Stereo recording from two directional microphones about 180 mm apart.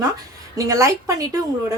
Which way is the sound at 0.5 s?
20° right (ahead or behind).